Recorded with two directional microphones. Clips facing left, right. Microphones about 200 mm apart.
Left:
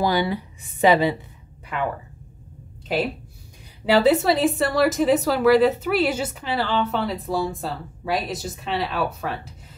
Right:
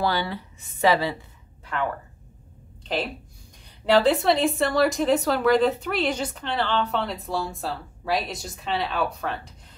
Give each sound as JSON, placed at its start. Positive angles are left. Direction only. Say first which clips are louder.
{"t": 0.0, "sound": "a woman's voice", "louder": "left 4 dB", "side_deg": 15}
{"t": 2.9, "sound": "a woman's voice", "louder": "left 4 dB", "side_deg": 10}